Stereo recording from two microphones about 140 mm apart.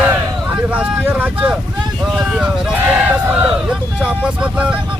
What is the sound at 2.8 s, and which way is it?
Speech, 15° right (ahead or behind).